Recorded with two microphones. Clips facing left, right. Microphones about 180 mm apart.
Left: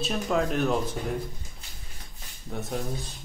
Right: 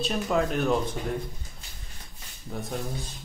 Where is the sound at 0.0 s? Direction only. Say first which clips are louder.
Right 1 dB; centre (ahead or behind).